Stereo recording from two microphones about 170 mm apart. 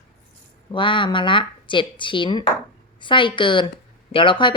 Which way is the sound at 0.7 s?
30° left (ahead or behind).